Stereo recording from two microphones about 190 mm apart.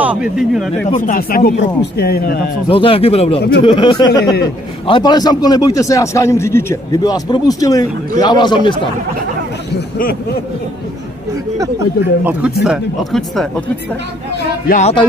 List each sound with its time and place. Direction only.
0.0 s speech: 5° right (ahead or behind)
0.8 s speech: 40° left (ahead or behind)
2.7 s a man's voice: 30° left (ahead or behind)
9.8 s speech: 50° left (ahead or behind)
12.3 s speech: 5° right (ahead or behind)
14.7 s speech: 35° left (ahead or behind)